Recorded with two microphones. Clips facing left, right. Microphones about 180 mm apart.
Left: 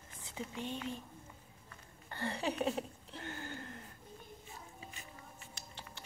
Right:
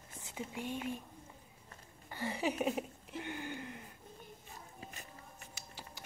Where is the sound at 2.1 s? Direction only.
10° right (ahead or behind).